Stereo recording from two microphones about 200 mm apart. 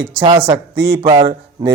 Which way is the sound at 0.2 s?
25° right (ahead or behind).